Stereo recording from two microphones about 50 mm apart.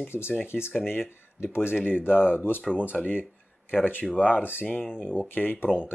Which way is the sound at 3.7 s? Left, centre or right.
Left.